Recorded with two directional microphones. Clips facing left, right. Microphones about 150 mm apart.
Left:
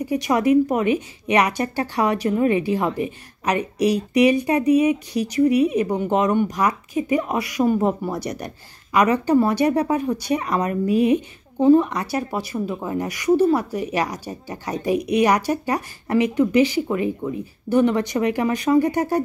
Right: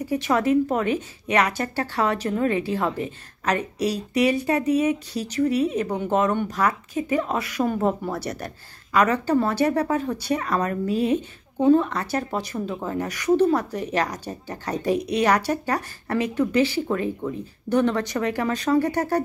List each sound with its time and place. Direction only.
0.0 s a woman's voice: 15° left (ahead or behind)